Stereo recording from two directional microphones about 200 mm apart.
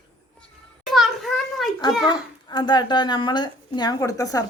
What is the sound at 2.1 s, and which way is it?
Speech, 20° left (ahead or behind).